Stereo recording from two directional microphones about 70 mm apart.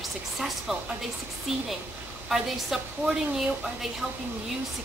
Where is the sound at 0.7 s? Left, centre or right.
Centre.